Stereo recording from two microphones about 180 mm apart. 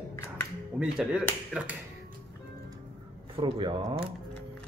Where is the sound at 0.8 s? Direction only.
5° right (ahead or behind).